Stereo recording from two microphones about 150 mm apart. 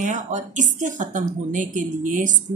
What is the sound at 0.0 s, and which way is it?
A woman's voice, 55° right (ahead or behind).